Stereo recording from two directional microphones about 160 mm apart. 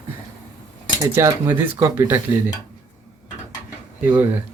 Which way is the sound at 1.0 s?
20° right (ahead or behind).